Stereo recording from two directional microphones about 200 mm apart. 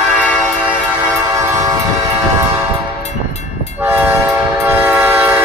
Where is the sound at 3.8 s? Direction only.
10° right (ahead or behind).